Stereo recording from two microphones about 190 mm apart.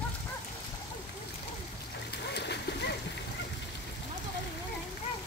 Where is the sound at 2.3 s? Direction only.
60° left (ahead or behind).